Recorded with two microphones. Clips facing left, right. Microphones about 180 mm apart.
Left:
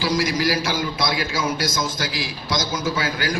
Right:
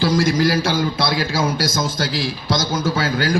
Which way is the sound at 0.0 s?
50° right (ahead or behind).